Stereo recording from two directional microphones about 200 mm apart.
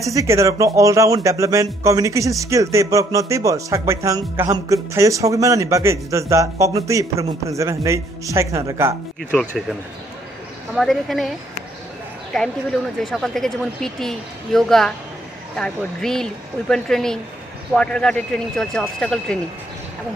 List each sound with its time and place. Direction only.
0.0 s a man's voice: 15° right (ahead or behind)
10.7 s a woman's voice: centre (ahead or behind)
12.3 s a woman's voice: centre (ahead or behind)